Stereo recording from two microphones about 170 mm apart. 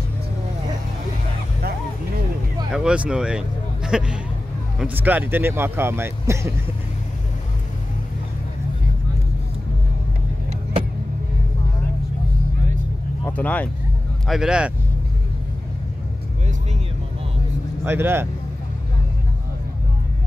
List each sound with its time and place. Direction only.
1.6 s vehicle: 65° right (ahead or behind)
2.7 s speech: 5° right (ahead or behind)
13.2 s vehicle: 10° left (ahead or behind)
14.2 s speech: centre (ahead or behind)
17.8 s speech: 15° right (ahead or behind)